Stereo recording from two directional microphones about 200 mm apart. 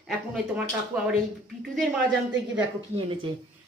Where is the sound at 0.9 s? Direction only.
10° right (ahead or behind).